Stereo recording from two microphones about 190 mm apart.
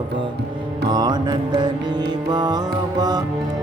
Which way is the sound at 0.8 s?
20° right (ahead or behind).